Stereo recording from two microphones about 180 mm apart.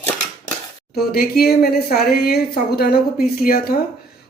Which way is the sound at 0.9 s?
60° left (ahead or behind).